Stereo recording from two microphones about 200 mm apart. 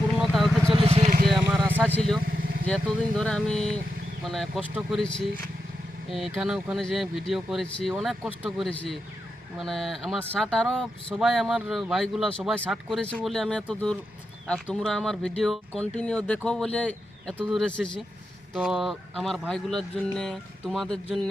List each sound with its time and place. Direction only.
0.2 s a sound: centre (ahead or behind)
0.7 s vehicle: 25° right (ahead or behind)
1.3 s vehicle: centre (ahead or behind)
2.2 s vehicle: 45° right (ahead or behind)
2.6 s speech: 5° left (ahead or behind)